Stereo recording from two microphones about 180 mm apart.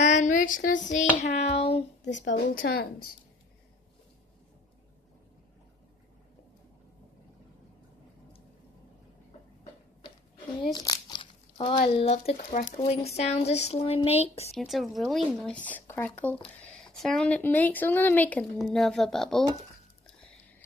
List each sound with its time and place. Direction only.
0.0 s child singing: 40° left (ahead or behind)
2.4 s speech: 55° left (ahead or behind)
10.6 s crumpling: 20° left (ahead or behind)
11.9 s speech: 35° left (ahead or behind)
14.5 s speech: centre (ahead or behind)